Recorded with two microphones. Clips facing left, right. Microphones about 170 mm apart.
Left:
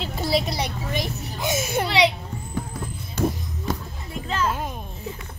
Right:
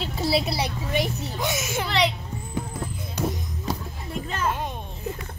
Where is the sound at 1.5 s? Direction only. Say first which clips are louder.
Left 5 dB; 30° left (ahead or behind).